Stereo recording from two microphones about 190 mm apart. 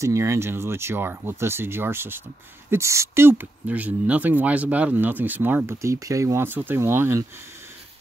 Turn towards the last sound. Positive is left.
turn(degrees=-15)  # may be behind; listen again after turning